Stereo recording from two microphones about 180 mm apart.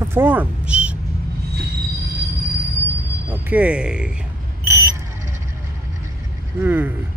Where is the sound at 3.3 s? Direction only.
10° right (ahead or behind).